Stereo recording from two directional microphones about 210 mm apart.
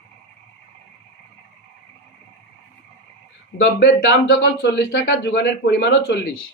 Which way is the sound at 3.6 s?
55° left (ahead or behind).